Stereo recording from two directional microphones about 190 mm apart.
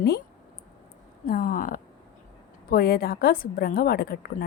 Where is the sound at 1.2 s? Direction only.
45° left (ahead or behind).